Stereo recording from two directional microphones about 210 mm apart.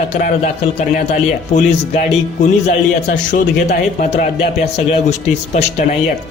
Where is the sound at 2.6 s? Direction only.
35° left (ahead or behind).